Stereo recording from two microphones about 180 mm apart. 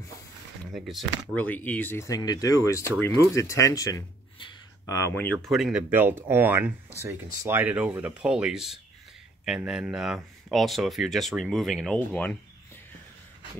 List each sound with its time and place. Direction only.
0.7 s speech: centre (ahead or behind)
1.3 s speech: 10° left (ahead or behind)
5.5 s speech: 5° right (ahead or behind)